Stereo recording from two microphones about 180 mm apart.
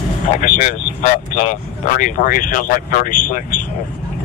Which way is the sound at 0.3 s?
40° left (ahead or behind).